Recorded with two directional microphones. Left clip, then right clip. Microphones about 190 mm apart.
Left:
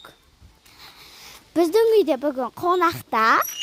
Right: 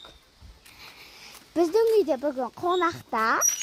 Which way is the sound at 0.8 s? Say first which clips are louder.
Left 2 dB; 15° left (ahead or behind).